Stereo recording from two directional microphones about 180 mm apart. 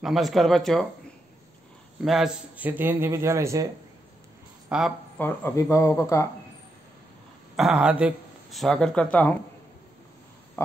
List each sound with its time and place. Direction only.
0.0 s a man's voice: centre (ahead or behind); by 3.7 s 15° right (ahead or behind)
4.6 s speech: centre (ahead or behind)
5.2 s speech: 15° left (ahead or behind)
7.5 s speech: 5° right (ahead or behind)